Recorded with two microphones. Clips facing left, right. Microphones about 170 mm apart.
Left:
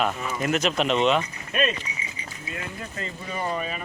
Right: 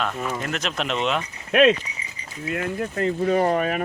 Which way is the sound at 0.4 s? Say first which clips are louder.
Left 4 dB; centre (ahead or behind).